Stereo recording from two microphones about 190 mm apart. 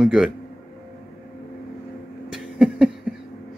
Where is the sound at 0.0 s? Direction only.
5° right (ahead or behind).